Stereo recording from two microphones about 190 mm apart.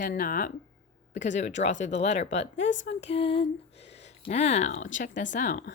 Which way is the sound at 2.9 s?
35° left (ahead or behind).